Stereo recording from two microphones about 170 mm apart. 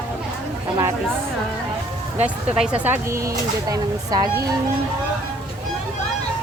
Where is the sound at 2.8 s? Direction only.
15° right (ahead or behind).